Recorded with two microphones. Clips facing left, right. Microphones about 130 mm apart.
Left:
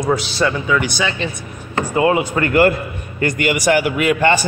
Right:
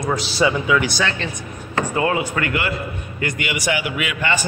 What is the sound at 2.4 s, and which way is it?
A man's voice, 40° left (ahead or behind).